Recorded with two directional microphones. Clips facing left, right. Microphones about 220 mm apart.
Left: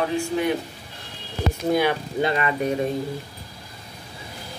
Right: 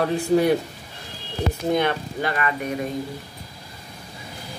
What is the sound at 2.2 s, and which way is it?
Speech, 25° left (ahead or behind).